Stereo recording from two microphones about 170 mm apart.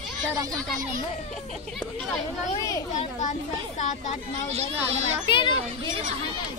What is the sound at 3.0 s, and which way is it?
Speech, 45° left (ahead or behind).